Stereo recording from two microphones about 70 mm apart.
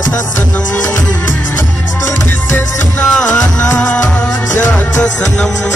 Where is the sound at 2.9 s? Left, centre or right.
Centre.